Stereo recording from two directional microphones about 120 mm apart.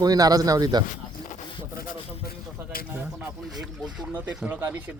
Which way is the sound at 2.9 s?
15° right (ahead or behind).